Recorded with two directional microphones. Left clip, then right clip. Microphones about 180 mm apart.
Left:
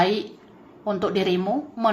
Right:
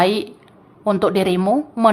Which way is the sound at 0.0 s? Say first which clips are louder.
Right 4 dB; 20° right (ahead or behind).